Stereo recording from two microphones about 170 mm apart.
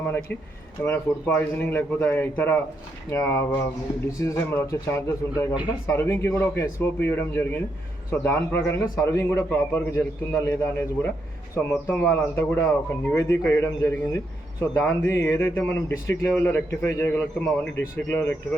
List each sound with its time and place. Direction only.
0.9 s a man's voice: 10° left (ahead or behind)